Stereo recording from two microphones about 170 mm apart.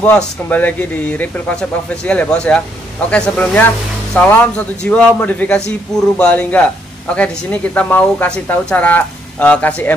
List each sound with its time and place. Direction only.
0.0 s speech: 10° left (ahead or behind)